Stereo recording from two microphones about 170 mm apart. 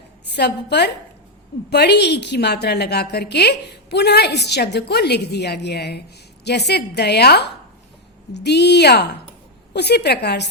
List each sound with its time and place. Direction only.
0.3 s a woman's voice: 80° left